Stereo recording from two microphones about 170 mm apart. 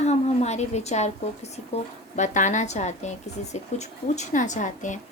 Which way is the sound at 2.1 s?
45° left (ahead or behind).